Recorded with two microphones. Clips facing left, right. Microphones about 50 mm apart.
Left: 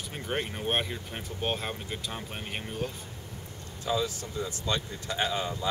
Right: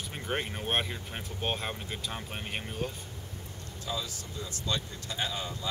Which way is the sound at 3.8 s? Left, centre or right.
Left.